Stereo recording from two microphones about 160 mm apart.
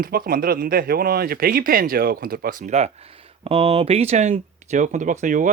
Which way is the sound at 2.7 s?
45° right (ahead or behind).